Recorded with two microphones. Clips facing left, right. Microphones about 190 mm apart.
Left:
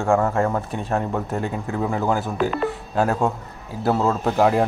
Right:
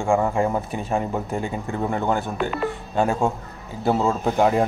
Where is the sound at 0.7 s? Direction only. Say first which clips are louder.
Even; centre (ahead or behind).